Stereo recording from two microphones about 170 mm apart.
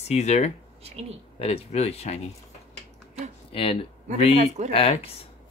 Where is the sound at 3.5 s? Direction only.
35° left (ahead or behind).